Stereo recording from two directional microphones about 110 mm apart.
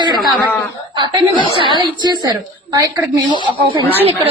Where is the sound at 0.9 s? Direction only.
40° right (ahead or behind).